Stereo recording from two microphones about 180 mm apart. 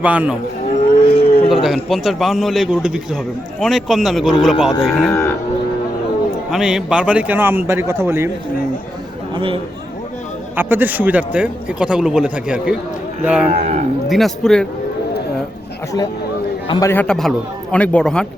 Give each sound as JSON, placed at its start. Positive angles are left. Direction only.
{"t": 0.0, "sound": "a man's voice", "side_deg": -5}
{"t": 1.0, "sound": "a sound", "side_deg": 30}
{"t": 1.6, "sound": "a man's voice", "side_deg": 0}
{"t": 5.0, "sound": "speech", "side_deg": 15}
{"t": 6.5, "sound": "a man's voice", "side_deg": -5}
{"t": 9.3, "sound": "speech", "side_deg": -30}
{"t": 10.5, "sound": "a man's voice", "side_deg": -10}
{"t": 13.5, "sound": "cattle", "side_deg": -40}
{"t": 14.1, "sound": "a man's voice", "side_deg": 0}
{"t": 16.6, "sound": "a man's voice", "side_deg": 25}
{"t": 16.9, "sound": "a man's voice", "side_deg": 5}